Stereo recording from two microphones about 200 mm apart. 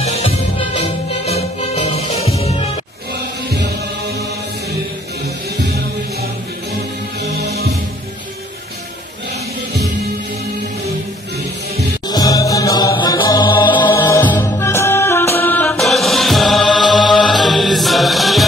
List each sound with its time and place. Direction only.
0.0 s music: 30° left (ahead or behind)
7.3 s music: 55° right (ahead or behind)
12.1 s music: 20° left (ahead or behind); by 18.4 s centre (ahead or behind)